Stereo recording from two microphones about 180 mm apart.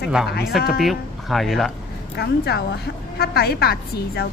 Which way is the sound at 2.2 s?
65° left (ahead or behind).